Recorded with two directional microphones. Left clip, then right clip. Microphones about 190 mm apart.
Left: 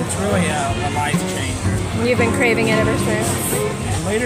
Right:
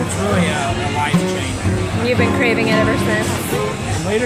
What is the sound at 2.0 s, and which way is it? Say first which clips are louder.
Speech: even; 20° left (ahead or behind).